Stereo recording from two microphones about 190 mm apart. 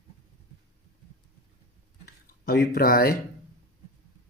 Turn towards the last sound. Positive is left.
turn(degrees=50)  # may be behind; listen again after turning